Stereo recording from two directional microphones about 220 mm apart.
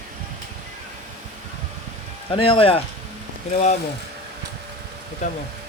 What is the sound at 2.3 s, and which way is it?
Speech, 25° left (ahead or behind).